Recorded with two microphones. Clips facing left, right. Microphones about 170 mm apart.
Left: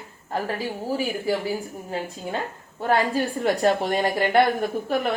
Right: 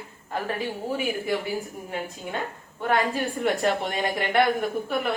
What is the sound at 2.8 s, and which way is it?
A woman's voice, 35° left (ahead or behind).